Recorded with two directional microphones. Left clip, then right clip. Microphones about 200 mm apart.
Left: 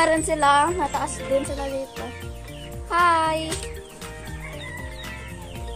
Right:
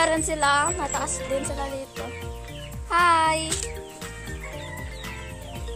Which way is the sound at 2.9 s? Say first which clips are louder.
Even; 30° right (ahead or behind).